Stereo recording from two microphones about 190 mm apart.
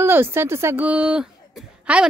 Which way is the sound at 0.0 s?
10° right (ahead or behind).